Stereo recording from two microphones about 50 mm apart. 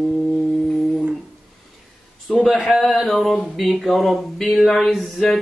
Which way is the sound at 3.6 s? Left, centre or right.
Centre.